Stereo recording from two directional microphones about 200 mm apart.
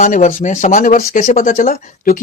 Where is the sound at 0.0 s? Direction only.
40° left (ahead or behind).